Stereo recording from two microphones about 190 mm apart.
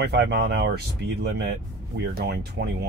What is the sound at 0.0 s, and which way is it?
Speech, 60° right (ahead or behind).